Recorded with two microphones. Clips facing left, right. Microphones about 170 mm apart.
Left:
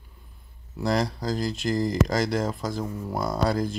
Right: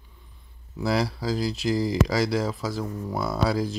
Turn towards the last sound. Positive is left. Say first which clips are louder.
# even
turn(degrees=0)  # may be behind; listen again after turning